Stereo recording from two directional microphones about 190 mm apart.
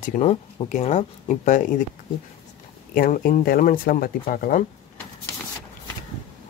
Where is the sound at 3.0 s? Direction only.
50° left (ahead or behind).